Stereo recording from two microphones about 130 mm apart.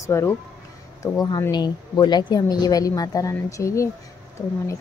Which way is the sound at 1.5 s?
35° left (ahead or behind).